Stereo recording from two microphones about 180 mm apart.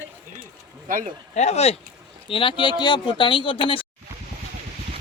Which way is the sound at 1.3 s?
35° left (ahead or behind).